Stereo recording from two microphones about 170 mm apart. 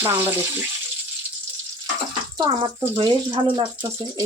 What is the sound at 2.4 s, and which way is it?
Speech, 30° right (ahead or behind).